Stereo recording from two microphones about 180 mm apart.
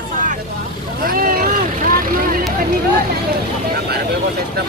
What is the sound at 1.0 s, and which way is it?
Vehicle, 55° right (ahead or behind).